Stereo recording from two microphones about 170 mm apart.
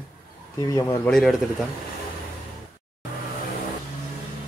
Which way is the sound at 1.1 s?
Centre (ahead or behind).